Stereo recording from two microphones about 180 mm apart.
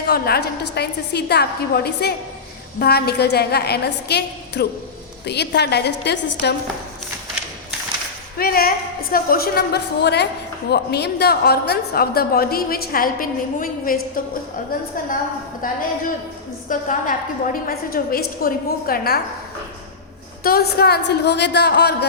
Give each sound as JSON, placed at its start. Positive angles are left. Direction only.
{"t": 0.1, "sound": "a woman's voice", "side_deg": 60}
{"t": 8.4, "sound": "a woman's voice", "side_deg": 55}
{"t": 15.6, "sound": "a woman's voice", "side_deg": 50}
{"t": 20.4, "sound": "a woman's voice", "side_deg": 60}